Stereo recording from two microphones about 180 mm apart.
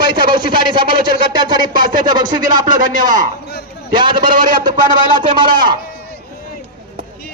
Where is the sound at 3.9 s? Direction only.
25° right (ahead or behind).